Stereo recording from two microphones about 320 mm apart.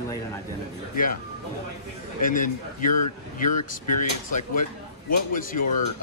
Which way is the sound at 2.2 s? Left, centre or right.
Left.